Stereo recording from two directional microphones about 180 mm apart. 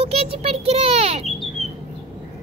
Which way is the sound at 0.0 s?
35° right (ahead or behind).